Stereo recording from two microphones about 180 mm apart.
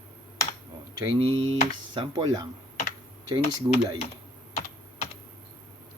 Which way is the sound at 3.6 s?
25° right (ahead or behind).